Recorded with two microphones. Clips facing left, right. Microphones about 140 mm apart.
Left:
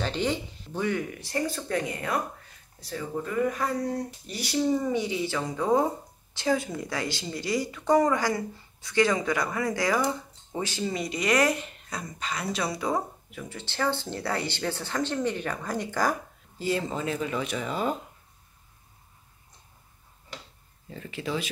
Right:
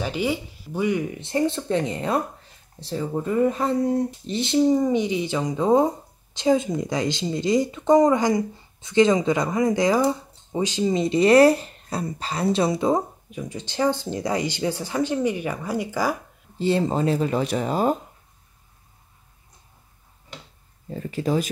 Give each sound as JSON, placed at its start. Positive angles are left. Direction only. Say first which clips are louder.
{"t": 0.0, "sound": "speech", "louder": "right 3 dB", "side_deg": -10}
{"t": 16.5, "sound": "speech", "louder": "right 7 dB", "side_deg": -30}
{"t": 20.9, "sound": "speech", "louder": "right 8 dB", "side_deg": -40}